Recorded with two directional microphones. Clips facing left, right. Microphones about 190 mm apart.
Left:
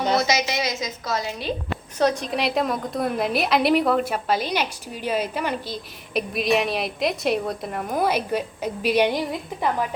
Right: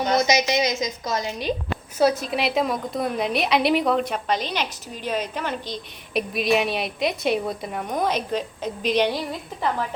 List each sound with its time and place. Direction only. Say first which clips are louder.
0.2 s a woman's voice: right 3 dB; 15° right (ahead or behind)
2.0 s a woman's voice: right 1 dB; 5° right (ahead or behind); by 9.6 s 15° left (ahead or behind)